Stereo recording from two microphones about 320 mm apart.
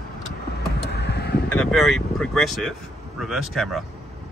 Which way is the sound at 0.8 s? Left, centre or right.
Left.